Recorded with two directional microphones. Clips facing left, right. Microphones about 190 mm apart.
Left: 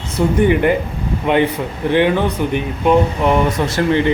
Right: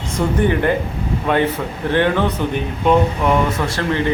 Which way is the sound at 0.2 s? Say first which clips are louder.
Left 3 dB; 10° left (ahead or behind).